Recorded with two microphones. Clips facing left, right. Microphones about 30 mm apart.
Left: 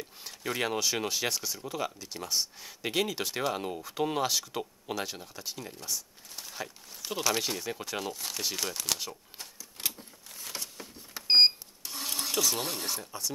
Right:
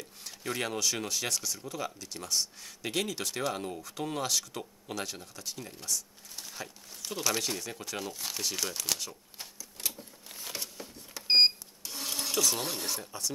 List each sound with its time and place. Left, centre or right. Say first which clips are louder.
0.2 s speech: left 2 dB; centre
10.8 s vehicle: even; centre
11.8 s speech: left 1 dB; centre